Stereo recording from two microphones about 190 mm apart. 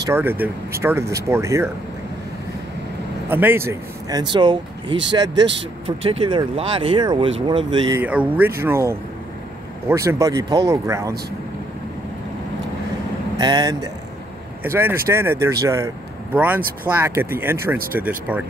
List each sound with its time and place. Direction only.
0.0 s speech: 10° right (ahead or behind)
3.3 s speech: 10° right (ahead or behind)
8.0 s speech: 10° right (ahead or behind)
13.4 s speech: 20° right (ahead or behind)